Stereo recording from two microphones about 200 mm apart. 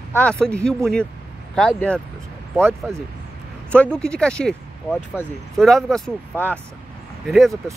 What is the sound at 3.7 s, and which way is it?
Speech, 5° left (ahead or behind).